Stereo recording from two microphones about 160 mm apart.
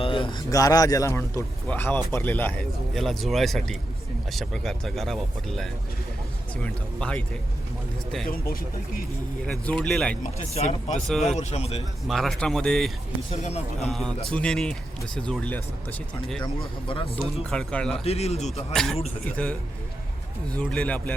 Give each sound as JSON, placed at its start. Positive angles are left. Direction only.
{"t": 0.0, "sound": "a man's voice", "side_deg": 35}
{"t": 9.5, "sound": "speech", "side_deg": 5}
{"t": 10.2, "sound": "speech", "side_deg": 40}
{"t": 12.0, "sound": "speech", "side_deg": 0}
{"t": 13.4, "sound": "speech", "side_deg": 40}
{"t": 14.3, "sound": "speech", "side_deg": 5}
{"t": 16.4, "sound": "speech", "side_deg": 30}
{"t": 17.5, "sound": "speech", "side_deg": 5}
{"t": 17.9, "sound": "speech", "side_deg": 40}
{"t": 18.7, "sound": "speech", "side_deg": 5}
{"t": 20.6, "sound": "speech", "side_deg": 5}